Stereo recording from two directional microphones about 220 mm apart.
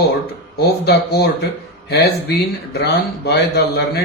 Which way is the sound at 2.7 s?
50° left (ahead or behind).